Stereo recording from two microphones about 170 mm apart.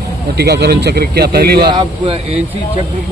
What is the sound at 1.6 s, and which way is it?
Speech, 30° right (ahead or behind).